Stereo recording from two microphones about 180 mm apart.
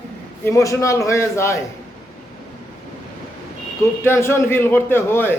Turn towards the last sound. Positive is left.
turn(degrees=10)  # may be behind; listen again after turning